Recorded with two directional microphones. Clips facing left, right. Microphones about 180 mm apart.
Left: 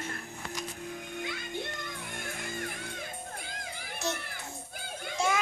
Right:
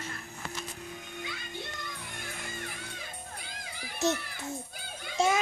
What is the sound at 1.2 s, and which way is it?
Music, 50° left (ahead or behind).